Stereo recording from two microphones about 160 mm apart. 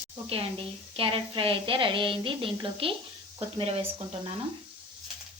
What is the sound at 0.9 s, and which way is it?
A woman's voice, 35° right (ahead or behind).